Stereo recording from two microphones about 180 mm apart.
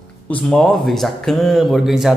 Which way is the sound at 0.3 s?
5° left (ahead or behind).